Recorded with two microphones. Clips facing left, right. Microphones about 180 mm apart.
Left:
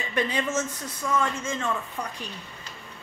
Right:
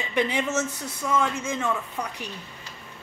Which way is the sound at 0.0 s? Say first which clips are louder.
Right 2 dB; 15° right (ahead or behind).